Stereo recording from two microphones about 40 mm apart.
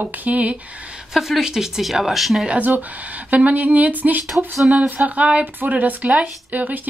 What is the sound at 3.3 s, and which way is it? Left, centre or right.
Speech, right.